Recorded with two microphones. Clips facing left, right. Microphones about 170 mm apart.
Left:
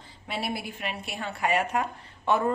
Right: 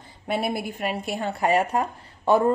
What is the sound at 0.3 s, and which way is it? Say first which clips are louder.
Speech: right 6 dB; 50° right (ahead or behind).